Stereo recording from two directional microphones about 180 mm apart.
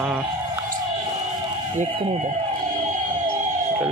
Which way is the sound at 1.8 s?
35° right (ahead or behind).